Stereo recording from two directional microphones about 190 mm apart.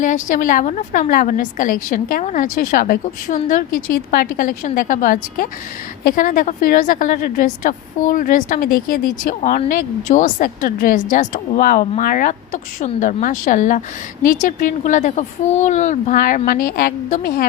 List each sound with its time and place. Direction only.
0.0 s a woman's voice: 45° left (ahead or behind)